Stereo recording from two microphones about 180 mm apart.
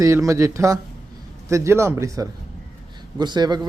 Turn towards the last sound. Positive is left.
turn(degrees=-25)  # may be behind; listen again after turning